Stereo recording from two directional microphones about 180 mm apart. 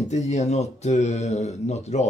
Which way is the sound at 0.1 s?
40° left (ahead or behind).